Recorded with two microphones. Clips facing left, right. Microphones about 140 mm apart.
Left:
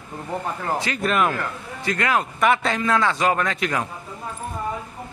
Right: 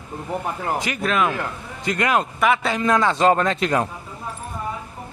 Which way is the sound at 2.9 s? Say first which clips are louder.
Right 4 dB; 20° right (ahead or behind).